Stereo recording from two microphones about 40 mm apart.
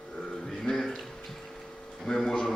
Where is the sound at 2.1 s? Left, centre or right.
Centre.